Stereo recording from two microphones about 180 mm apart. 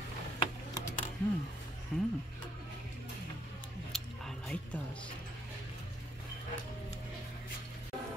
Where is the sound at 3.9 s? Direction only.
Centre (ahead or behind).